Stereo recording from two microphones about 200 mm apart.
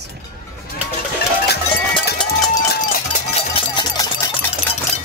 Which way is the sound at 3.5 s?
25° left (ahead or behind).